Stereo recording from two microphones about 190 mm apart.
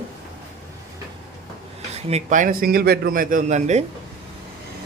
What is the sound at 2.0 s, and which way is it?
A man's voice, 40° right (ahead or behind).